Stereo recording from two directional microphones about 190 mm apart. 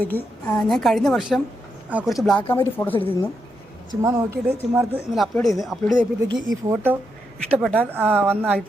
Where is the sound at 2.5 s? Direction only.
10° left (ahead or behind).